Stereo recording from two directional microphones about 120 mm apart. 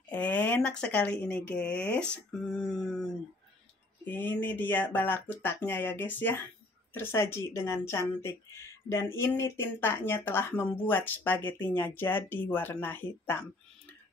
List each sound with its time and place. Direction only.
0.1 s speech: 10° left (ahead or behind)